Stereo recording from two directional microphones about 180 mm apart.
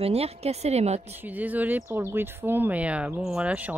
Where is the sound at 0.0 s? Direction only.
35° right (ahead or behind).